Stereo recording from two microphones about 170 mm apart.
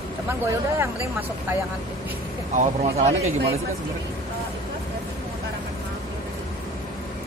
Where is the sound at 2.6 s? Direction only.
40° right (ahead or behind).